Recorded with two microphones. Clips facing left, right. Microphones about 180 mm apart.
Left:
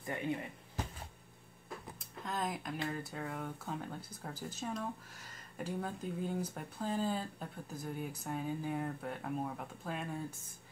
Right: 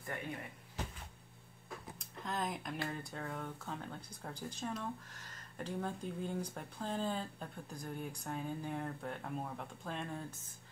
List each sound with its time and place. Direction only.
0.0 s speech: 20° left (ahead or behind)
2.0 s speech: centre (ahead or behind)